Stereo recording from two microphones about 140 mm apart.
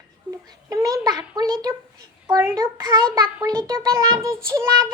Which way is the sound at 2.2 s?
20° right (ahead or behind).